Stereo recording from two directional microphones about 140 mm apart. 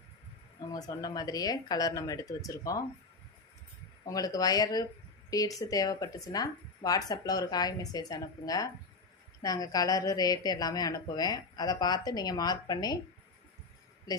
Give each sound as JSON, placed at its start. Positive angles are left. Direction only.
{"t": 0.7, "sound": "a woman's voice", "side_deg": 30}
{"t": 4.0, "sound": "a woman's voice", "side_deg": 25}